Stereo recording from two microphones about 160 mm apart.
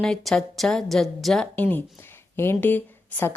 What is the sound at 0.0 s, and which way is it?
A woman's voice, centre (ahead or behind).